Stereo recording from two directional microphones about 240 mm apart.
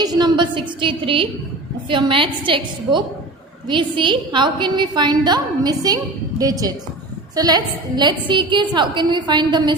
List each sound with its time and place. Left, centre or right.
0.0 s a woman's voice: centre